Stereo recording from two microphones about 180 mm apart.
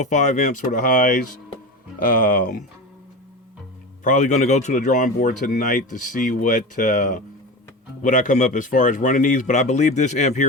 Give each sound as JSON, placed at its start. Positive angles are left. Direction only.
{"t": 0.0, "sound": "speech", "side_deg": 40}
{"t": 4.0, "sound": "speech", "side_deg": 45}